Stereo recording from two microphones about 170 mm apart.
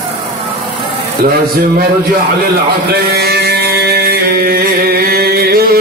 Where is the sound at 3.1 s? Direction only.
70° right (ahead or behind).